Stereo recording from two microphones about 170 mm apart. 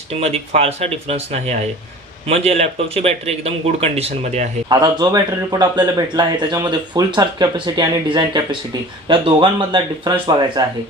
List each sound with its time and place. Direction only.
0.1 s speech: 35° right (ahead or behind)
4.7 s a man's voice: 25° right (ahead or behind)